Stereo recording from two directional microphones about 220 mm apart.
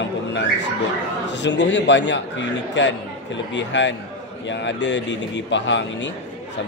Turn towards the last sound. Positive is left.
turn(degrees=55)  # may be behind; listen again after turning